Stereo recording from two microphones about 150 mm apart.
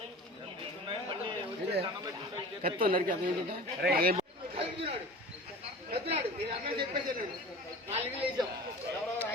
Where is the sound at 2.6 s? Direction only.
75° right (ahead or behind).